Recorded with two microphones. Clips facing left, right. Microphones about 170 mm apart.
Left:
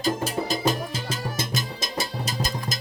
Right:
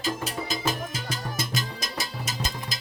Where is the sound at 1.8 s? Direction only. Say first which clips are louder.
Left 4 dB; 25° left (ahead or behind).